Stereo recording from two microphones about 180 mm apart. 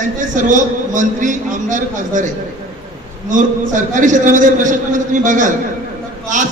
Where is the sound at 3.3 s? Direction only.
45° right (ahead or behind).